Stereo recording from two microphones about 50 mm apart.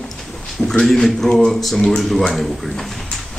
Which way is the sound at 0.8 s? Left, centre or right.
Centre.